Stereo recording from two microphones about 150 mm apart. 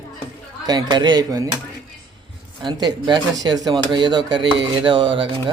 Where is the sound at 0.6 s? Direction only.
25° right (ahead or behind).